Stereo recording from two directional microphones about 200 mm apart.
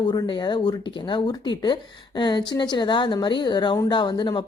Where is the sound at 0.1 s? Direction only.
20° left (ahead or behind).